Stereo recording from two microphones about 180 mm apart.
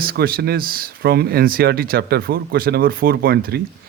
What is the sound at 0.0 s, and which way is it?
A man's voice, 55° right (ahead or behind).